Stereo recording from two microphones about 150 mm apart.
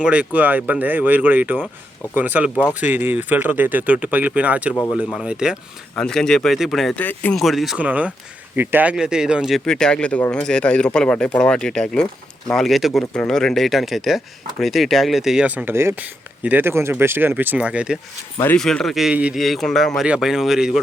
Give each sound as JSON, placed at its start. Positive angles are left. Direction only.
{"t": 0.0, "sound": "speech", "side_deg": -10}
{"t": 4.7, "sound": "speech", "side_deg": 15}
{"t": 5.0, "sound": "speech", "side_deg": -5}
{"t": 7.3, "sound": "speech", "side_deg": 0}
{"t": 18.5, "sound": "speech", "side_deg": 5}